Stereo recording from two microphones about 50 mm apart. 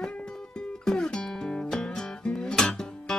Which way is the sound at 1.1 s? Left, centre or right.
Centre.